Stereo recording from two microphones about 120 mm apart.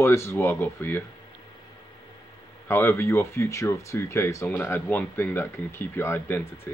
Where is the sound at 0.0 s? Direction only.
20° left (ahead or behind).